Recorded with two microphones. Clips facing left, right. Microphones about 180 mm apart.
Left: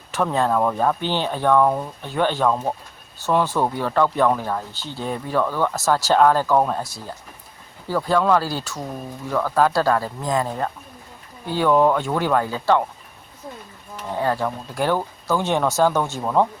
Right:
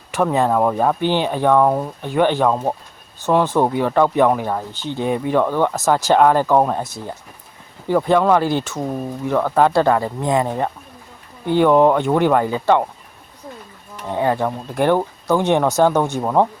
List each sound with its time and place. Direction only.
0.1 s speech: 15° right (ahead or behind)
14.2 s speech: 20° right (ahead or behind)